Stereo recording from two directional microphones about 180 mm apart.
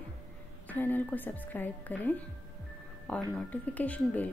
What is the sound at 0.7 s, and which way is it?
Speech, 10° left (ahead or behind).